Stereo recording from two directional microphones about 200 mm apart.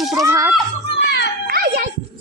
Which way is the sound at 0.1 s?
15° right (ahead or behind).